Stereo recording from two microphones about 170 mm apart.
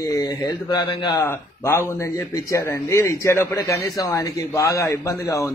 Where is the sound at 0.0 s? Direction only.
20° left (ahead or behind).